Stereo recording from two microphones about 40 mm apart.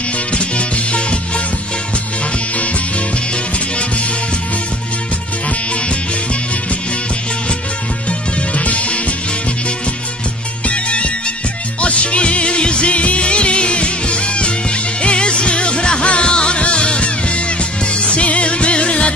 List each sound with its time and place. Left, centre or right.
0.3 s music: left
8.1 s music: left
10.7 s music: left